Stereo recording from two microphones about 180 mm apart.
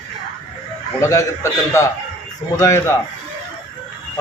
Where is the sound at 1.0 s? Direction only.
15° left (ahead or behind).